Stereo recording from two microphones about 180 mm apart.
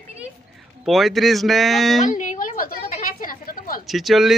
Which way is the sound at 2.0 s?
45° left (ahead or behind).